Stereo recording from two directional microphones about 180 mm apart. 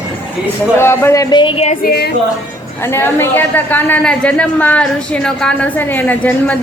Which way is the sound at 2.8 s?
15° left (ahead or behind).